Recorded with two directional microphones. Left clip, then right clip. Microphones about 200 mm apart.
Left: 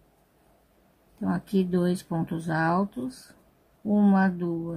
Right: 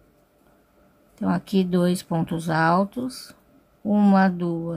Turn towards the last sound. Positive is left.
turn(degrees=-20)  # may be behind; listen again after turning